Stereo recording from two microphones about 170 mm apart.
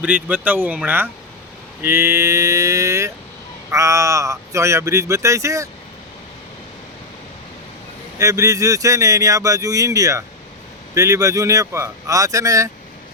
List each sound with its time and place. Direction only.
0.0 s speech: 10° right (ahead or behind)
8.2 s speech: 20° right (ahead or behind)